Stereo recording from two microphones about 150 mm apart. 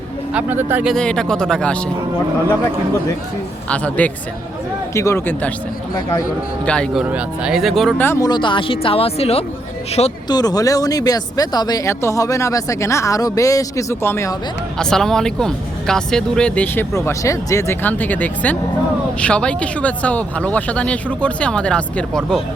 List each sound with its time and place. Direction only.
0.3 s speech: 15° right (ahead or behind)
0.9 s speech: 5° left (ahead or behind)
3.7 s speech: 10° left (ahead or behind)
6.7 s speech: 5° left (ahead or behind)
7.1 s speech: 5° right (ahead or behind)
7.9 s speech: 15° left (ahead or behind)
8.3 s speech: 30° left (ahead or behind)
10.2 s speech: 25° left (ahead or behind)
14.8 s speech: 5° left (ahead or behind)
16.9 s speech: 20° left (ahead or behind)